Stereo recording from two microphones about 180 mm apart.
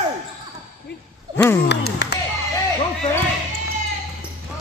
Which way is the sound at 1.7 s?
70° left (ahead or behind).